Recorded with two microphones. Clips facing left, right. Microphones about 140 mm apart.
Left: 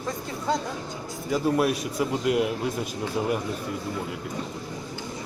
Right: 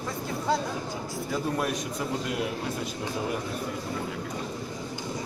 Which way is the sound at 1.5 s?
10° left (ahead or behind).